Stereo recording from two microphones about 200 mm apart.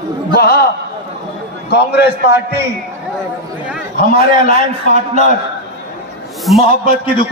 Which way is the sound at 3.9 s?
40° left (ahead or behind).